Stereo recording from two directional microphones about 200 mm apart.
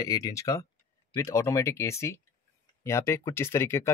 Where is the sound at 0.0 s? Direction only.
15° left (ahead or behind).